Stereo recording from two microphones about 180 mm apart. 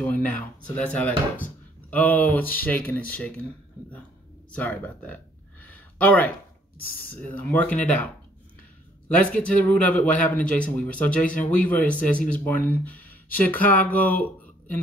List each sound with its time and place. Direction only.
0.0 s speech: 10° left (ahead or behind)
4.6 s a sound: 10° left (ahead or behind)
7.2 s speech: 10° left (ahead or behind)
9.1 s speech: 5° left (ahead or behind)
11.2 s speech: 50° left (ahead or behind)
11.8 s speech: 5° left (ahead or behind)